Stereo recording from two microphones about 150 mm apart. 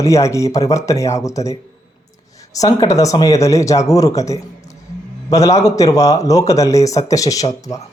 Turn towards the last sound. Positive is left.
turn(degrees=20)  # may be behind; listen again after turning